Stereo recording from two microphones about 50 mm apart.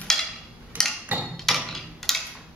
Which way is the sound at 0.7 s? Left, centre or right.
Right.